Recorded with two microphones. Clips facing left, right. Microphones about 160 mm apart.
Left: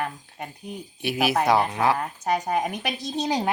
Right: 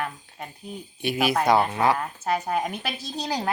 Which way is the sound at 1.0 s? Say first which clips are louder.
Even; 5° left (ahead or behind).